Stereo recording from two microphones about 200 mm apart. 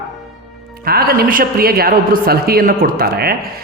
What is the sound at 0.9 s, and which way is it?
Speech, 50° right (ahead or behind).